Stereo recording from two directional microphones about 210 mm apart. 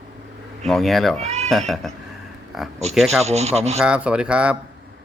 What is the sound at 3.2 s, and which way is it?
Speech, 30° right (ahead or behind).